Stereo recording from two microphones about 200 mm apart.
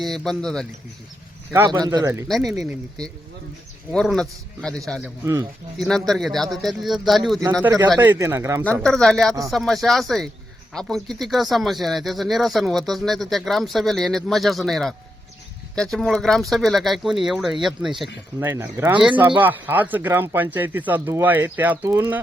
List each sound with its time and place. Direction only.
0.0 s speech: centre (ahead or behind)
1.5 s speech: 15° right (ahead or behind)
2.2 s speech: centre (ahead or behind)
3.9 s speech: centre (ahead or behind)
5.2 s speech: 15° right (ahead or behind)
5.8 s speech: centre (ahead or behind)
7.6 s speech: 10° right (ahead or behind)
8.8 s speech: centre (ahead or behind)
18.3 s speech: 15° right (ahead or behind)